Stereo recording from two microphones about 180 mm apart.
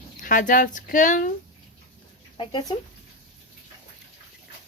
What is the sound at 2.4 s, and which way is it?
Speech, 25° left (ahead or behind).